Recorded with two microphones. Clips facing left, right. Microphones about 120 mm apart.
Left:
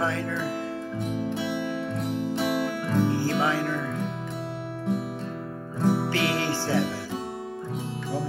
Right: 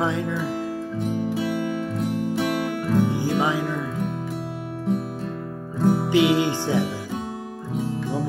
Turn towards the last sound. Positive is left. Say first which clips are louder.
# right 4 dB
turn(degrees=-15)  # may be behind; listen again after turning